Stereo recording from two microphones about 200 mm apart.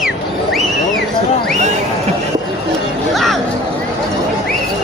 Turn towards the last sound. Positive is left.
turn(degrees=0)  # may be behind; listen again after turning